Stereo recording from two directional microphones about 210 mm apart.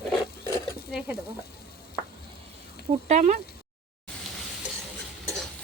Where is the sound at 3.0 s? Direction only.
35° right (ahead or behind).